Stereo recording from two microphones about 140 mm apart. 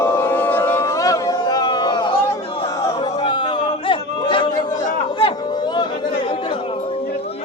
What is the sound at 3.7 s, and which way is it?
Chatter, 35° left (ahead or behind).